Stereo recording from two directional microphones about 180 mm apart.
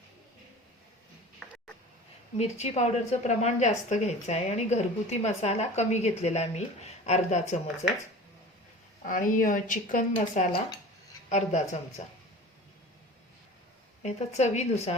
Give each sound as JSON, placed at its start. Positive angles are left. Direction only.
{"t": 2.4, "sound": "a woman's voice", "side_deg": 35}
{"t": 9.0, "sound": "a woman's voice", "side_deg": 50}
{"t": 14.0, "sound": "a woman's voice", "side_deg": 40}